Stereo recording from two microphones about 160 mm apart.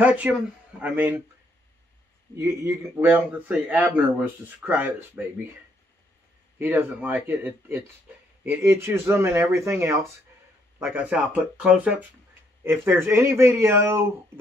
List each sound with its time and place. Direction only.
0.0 s speech: 10° right (ahead or behind)
2.3 s speech: 15° right (ahead or behind)
6.6 s speech: 10° right (ahead or behind)